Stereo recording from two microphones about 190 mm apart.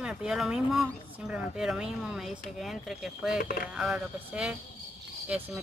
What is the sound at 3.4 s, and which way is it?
Speech, 50° left (ahead or behind).